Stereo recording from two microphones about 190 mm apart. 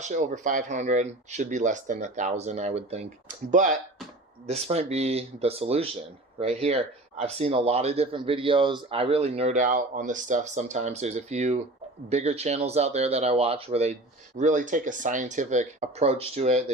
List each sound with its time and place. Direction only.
0.0 s speech: 40° right (ahead or behind)